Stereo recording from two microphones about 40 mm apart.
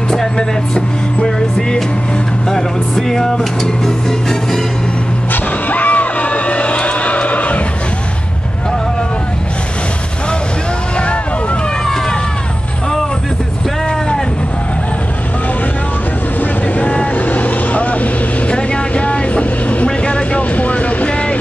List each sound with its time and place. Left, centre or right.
0.1 s music: centre
5.3 s music: left
16.8 s vehicle: left